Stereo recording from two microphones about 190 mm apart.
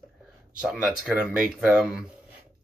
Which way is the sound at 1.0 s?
5° right (ahead or behind).